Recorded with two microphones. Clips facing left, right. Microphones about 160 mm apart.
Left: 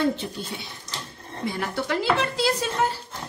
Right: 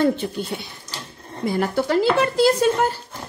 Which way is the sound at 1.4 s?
40° right (ahead or behind).